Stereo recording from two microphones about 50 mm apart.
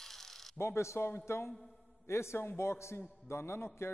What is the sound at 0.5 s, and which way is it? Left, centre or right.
A man's voice, left.